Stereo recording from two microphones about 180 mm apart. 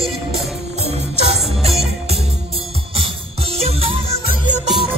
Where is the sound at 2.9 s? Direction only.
30° right (ahead or behind).